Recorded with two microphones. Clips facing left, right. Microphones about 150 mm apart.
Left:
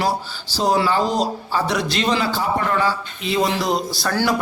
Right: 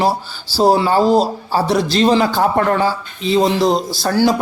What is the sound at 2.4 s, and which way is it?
Speech, 50° right (ahead or behind).